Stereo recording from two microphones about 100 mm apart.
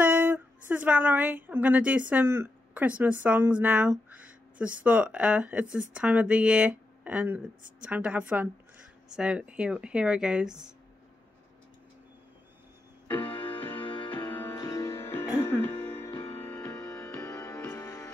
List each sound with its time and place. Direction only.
0.0 s a woman's voice: 20° right (ahead or behind)
2.2 s speech: 25° right (ahead or behind); by 10.7 s 5° right (ahead or behind)
13.1 s music: 15° left (ahead or behind)
13.8 s music: 55° left (ahead or behind)
14.1 s music: 20° left (ahead or behind)
14.6 s music: 35° left (ahead or behind)
16.1 s music: 60° left (ahead or behind)
16.3 s music: 20° left (ahead or behind)